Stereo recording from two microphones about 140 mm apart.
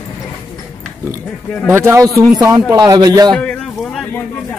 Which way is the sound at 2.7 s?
30° right (ahead or behind).